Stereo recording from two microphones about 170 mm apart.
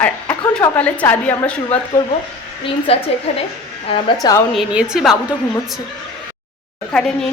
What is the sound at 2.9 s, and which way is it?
Speech, 35° left (ahead or behind).